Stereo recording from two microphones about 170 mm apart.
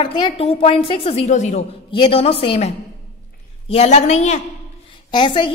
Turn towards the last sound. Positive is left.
turn(degrees=30)  # may be behind; listen again after turning